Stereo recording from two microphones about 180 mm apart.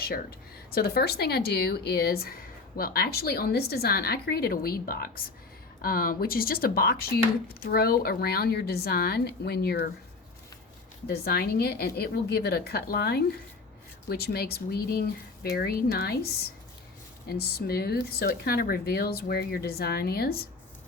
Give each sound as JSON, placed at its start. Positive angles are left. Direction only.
{"t": 0.7, "sound": "speech", "side_deg": 60}
{"t": 11.0, "sound": "speech", "side_deg": 60}
{"t": 17.3, "sound": "speech", "side_deg": 60}